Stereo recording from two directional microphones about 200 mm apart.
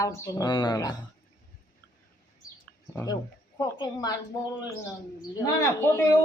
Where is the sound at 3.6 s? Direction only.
20° left (ahead or behind).